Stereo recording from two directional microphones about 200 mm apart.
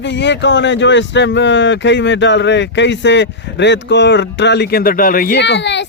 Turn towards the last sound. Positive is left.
turn(degrees=60)  # may be behind; listen again after turning